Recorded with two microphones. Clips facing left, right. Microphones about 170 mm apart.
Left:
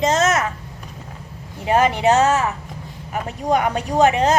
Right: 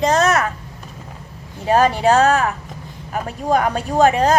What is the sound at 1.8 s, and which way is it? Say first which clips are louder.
A child's voice: right 1 dB; 20° left (ahead or behind).